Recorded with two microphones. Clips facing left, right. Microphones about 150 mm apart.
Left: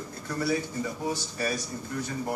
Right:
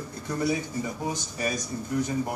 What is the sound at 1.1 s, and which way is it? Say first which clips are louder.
Speech: even; 20° right (ahead or behind).